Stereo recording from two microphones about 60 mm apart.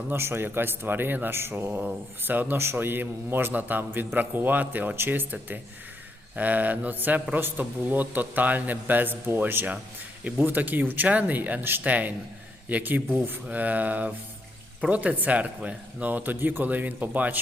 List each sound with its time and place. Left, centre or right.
0.1 s a man's voice: right